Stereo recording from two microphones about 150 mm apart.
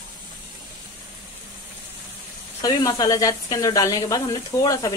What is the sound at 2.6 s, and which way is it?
Speech, 25° left (ahead or behind).